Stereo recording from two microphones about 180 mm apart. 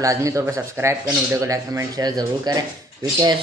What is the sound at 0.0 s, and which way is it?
Speech, 15° right (ahead or behind).